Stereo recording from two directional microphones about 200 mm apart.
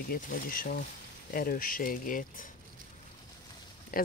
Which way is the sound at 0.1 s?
45° left (ahead or behind).